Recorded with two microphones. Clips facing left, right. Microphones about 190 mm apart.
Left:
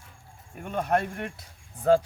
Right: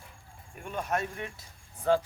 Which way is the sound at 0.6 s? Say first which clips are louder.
Left 6 dB; 55° left (ahead or behind).